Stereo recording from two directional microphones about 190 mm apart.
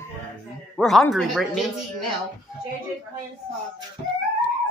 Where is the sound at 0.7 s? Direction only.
Centre (ahead or behind).